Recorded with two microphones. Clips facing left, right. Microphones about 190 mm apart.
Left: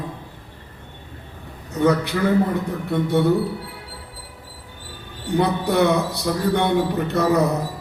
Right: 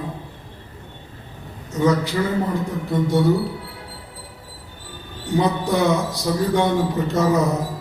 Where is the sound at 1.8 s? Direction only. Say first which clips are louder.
Even; 60° left (ahead or behind).